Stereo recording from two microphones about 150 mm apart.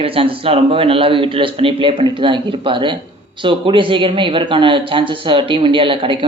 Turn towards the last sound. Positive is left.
turn(degrees=-35)  # may be behind; listen again after turning